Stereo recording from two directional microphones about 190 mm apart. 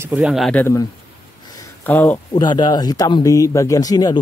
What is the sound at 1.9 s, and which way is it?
Speech, 10° left (ahead or behind).